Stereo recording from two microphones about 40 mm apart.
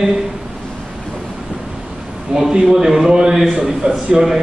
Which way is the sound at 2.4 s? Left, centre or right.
Centre.